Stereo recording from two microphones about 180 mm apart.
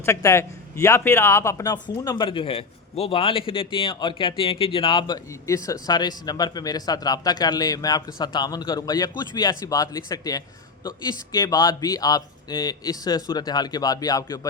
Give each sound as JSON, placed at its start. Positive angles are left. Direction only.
{"t": 0.0, "sound": "a man's voice", "side_deg": 15}